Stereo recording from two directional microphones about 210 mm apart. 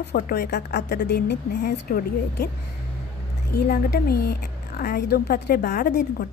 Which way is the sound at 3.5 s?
50° left (ahead or behind).